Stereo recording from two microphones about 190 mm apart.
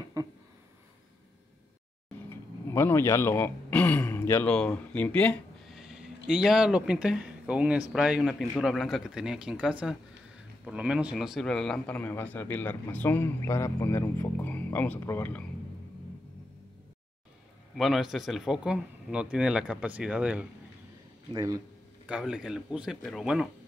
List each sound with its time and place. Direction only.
0.2 s speech: 20° right (ahead or behind)
2.2 s a man's voice: 15° left (ahead or behind)
17.7 s speech: centre (ahead or behind)
21.3 s a man's voice: 20° right (ahead or behind)
22.0 s speech: 5° right (ahead or behind)